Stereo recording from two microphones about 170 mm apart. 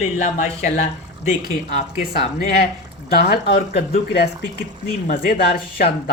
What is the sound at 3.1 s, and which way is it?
Speech, 65° left (ahead or behind).